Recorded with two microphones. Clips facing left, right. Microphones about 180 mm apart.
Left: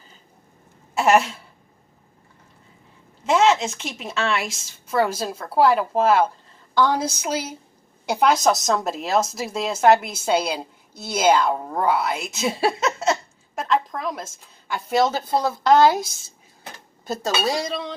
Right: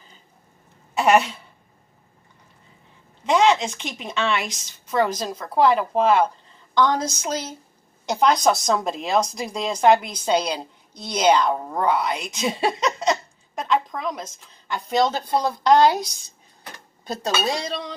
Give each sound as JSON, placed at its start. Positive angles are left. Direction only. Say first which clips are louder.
{"t": 0.9, "sound": "a woman's voice", "louder": "even", "side_deg": 0}
{"t": 3.3, "sound": "a woman's voice", "louder": "even", "side_deg": 5}